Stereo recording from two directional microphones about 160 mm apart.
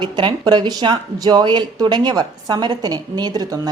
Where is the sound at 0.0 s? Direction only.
30° right (ahead or behind).